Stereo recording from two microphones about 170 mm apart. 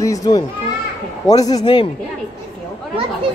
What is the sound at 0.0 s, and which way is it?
A child's voice, 20° left (ahead or behind).